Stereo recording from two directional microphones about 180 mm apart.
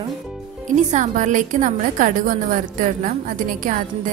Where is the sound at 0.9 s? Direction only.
45° right (ahead or behind).